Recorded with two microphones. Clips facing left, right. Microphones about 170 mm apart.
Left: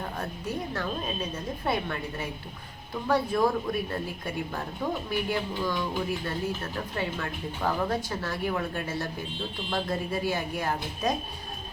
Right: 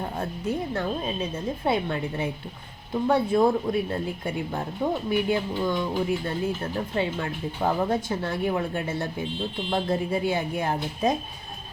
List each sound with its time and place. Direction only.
0.2 s speech: 25° right (ahead or behind)